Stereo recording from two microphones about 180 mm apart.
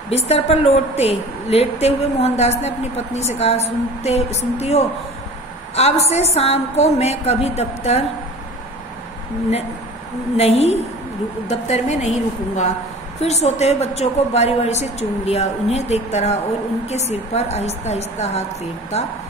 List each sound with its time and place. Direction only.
0.1 s a woman's voice: 35° left (ahead or behind)
10.3 s a woman's voice: 35° left (ahead or behind)